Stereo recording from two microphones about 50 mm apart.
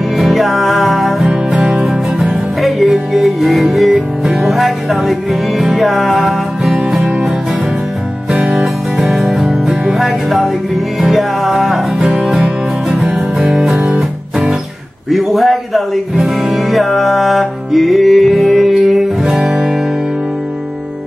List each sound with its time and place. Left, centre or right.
0.2 s music: centre
1.2 s music: centre
2.6 s music: centre
8.3 s music: centre
9.1 s music: centre
12.0 s music: centre
15.0 s music: centre